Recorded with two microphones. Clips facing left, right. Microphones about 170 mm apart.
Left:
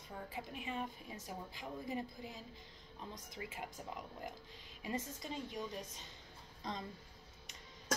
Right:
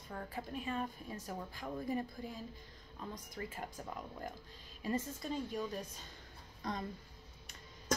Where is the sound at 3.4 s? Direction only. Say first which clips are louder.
Right 2 dB; 10° left (ahead or behind).